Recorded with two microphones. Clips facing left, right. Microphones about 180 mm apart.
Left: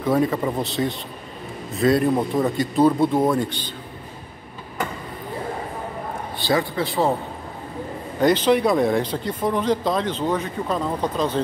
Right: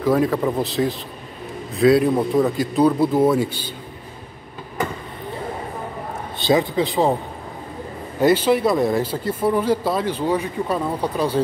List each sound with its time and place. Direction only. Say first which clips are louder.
0.0 s speech: right 2 dB; centre (ahead or behind)
6.4 s speech: right 4 dB; 20° right (ahead or behind)
8.2 s speech: right 1 dB; 5° right (ahead or behind)